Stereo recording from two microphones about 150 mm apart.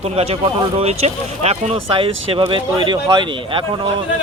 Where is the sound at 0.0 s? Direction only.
40° right (ahead or behind).